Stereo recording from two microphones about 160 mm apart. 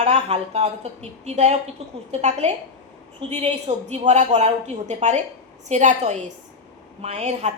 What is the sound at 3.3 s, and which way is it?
A woman's voice, 45° right (ahead or behind).